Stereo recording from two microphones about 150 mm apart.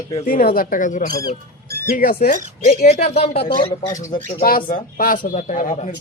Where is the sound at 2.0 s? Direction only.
75° left (ahead or behind).